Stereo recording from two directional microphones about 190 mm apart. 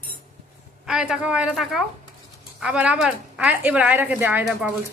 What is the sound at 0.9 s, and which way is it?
A woman's voice, 5° right (ahead or behind).